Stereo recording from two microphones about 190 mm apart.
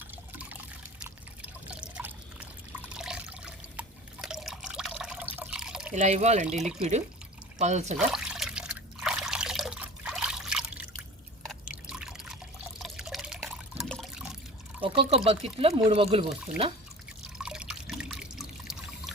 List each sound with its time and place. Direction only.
0.1 s water: 10° right (ahead or behind)
1.0 s pour: 5° right (ahead or behind)
3.0 s water: 5° right (ahead or behind)
5.4 s drip: 5° right (ahead or behind)
5.9 s speech: 35° right (ahead or behind)
6.6 s speech: 5° right (ahead or behind)
7.6 s speech: 35° right (ahead or behind)
7.9 s trickle: 5° right (ahead or behind)
11.7 s water: 5° right (ahead or behind)
14.8 s speech: 30° right (ahead or behind)
17.3 s water: 5° right (ahead or behind)